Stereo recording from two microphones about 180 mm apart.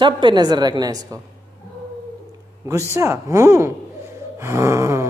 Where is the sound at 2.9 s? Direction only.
15° right (ahead or behind).